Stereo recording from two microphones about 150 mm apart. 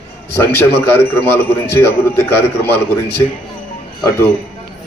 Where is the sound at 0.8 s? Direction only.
15° left (ahead or behind).